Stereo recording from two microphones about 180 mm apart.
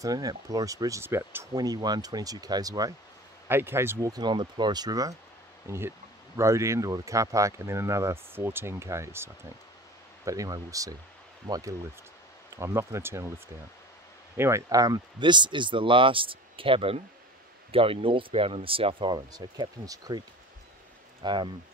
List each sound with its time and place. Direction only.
0.0 s speech: 20° right (ahead or behind)
14.3 s speech: 15° right (ahead or behind)